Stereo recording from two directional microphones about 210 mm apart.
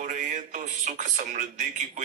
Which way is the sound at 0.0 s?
35° right (ahead or behind).